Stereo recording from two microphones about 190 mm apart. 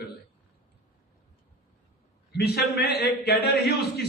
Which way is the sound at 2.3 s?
55° left (ahead or behind).